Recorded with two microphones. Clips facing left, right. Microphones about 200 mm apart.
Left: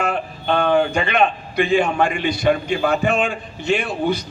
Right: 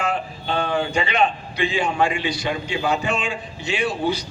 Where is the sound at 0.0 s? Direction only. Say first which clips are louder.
Left 2 dB; 55° left (ahead or behind).